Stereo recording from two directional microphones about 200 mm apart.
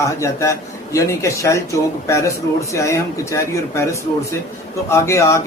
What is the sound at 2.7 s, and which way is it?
Speech, 15° left (ahead or behind).